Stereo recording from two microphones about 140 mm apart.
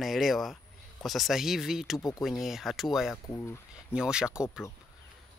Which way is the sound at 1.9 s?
25° left (ahead or behind).